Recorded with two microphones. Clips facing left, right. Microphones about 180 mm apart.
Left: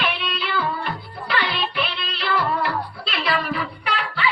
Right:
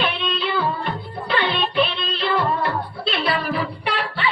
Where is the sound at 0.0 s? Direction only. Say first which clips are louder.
Right 3 dB; 25° right (ahead or behind).